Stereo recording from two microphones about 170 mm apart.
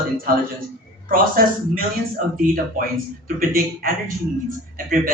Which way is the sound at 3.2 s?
60° right (ahead or behind).